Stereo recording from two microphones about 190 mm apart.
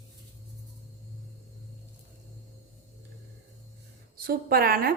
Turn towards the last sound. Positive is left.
turn(degrees=-55)  # may be behind; listen again after turning